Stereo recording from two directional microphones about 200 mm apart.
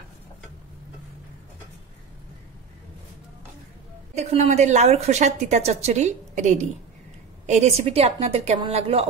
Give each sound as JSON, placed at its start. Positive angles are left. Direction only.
{"t": 4.1, "sound": "a woman's voice", "side_deg": -35}